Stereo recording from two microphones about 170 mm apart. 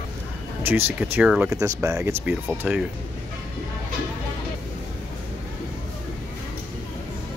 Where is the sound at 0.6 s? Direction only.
10° right (ahead or behind).